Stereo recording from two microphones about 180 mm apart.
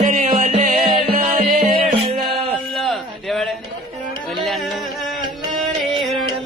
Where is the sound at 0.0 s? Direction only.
40° right (ahead or behind).